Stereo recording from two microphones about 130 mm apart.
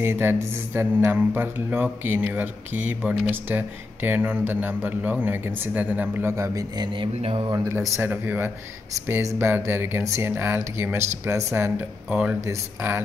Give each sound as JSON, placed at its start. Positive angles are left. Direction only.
{"t": 0.0, "sound": "speech", "side_deg": -20}
{"t": 7.2, "sound": "speech", "side_deg": -50}
{"t": 7.5, "sound": "speech", "side_deg": -25}